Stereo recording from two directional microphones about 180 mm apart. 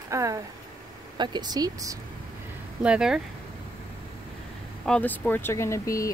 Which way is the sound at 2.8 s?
5° right (ahead or behind).